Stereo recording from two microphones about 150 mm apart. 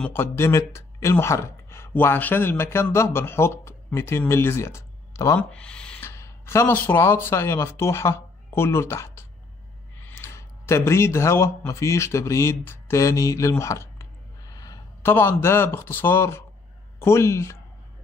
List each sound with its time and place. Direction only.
0.0 s speech: 15° left (ahead or behind)
5.5 s speech: 5° left (ahead or behind)